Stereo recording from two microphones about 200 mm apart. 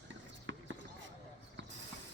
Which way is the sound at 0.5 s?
65° right (ahead or behind).